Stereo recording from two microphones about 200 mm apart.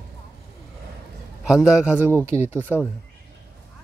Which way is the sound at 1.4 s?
5° right (ahead or behind).